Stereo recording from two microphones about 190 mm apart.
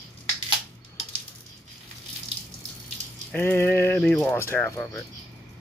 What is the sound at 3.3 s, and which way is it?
Speech, 10° left (ahead or behind).